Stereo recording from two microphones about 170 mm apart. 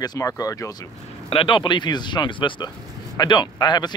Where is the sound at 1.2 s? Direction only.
30° left (ahead or behind).